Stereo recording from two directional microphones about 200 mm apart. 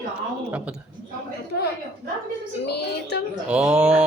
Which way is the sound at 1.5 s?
55° left (ahead or behind).